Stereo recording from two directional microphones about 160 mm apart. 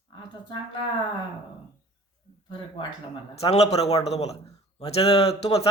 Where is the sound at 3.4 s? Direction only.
40° left (ahead or behind).